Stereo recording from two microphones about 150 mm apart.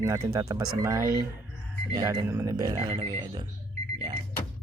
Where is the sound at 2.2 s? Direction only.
15° right (ahead or behind).